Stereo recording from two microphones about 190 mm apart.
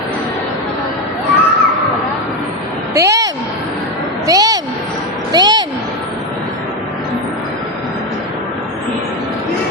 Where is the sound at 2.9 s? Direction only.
15° right (ahead or behind).